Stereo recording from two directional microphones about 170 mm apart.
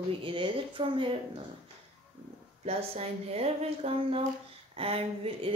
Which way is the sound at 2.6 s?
35° right (ahead or behind).